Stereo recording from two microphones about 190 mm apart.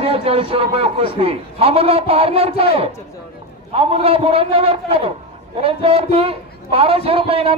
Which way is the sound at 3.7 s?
30° right (ahead or behind).